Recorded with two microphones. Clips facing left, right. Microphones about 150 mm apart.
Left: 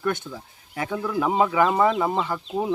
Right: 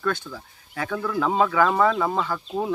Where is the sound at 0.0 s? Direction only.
20° left (ahead or behind).